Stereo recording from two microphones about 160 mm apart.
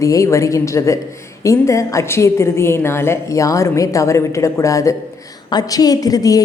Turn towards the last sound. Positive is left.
turn(degrees=20)  # may be behind; listen again after turning